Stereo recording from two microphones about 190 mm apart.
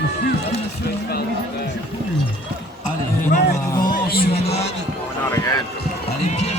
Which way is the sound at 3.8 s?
55° left (ahead or behind).